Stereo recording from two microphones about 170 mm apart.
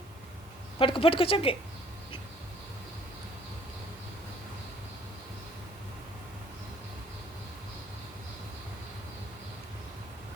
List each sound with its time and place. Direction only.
0.8 s a woman's voice: 30° left (ahead or behind)